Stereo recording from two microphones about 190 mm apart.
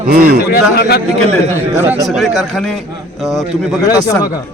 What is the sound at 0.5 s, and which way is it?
Speech, 55° left (ahead or behind).